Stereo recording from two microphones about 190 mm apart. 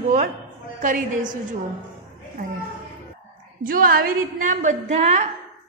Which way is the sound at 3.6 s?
50° right (ahead or behind).